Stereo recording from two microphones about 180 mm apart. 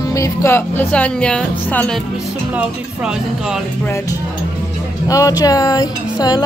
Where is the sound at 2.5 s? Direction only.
5° right (ahead or behind).